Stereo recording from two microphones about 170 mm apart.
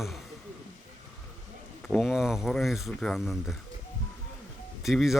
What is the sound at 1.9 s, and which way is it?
Speech, centre (ahead or behind).